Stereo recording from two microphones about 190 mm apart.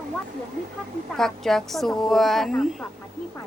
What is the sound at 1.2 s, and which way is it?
A woman's voice, centre (ahead or behind).